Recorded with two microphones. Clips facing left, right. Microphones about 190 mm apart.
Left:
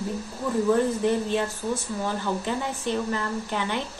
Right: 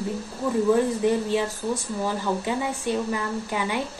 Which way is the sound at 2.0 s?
10° right (ahead or behind).